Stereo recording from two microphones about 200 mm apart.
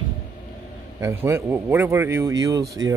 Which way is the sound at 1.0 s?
15° right (ahead or behind).